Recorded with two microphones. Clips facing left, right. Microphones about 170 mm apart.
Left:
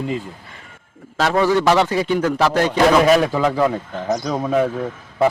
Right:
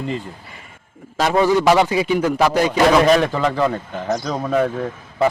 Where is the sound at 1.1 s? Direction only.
15° right (ahead or behind).